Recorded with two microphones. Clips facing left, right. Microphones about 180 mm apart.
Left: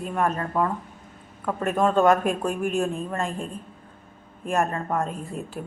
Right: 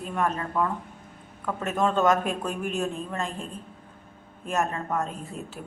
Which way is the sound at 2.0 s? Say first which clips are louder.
Left 5 dB; 50° left (ahead or behind).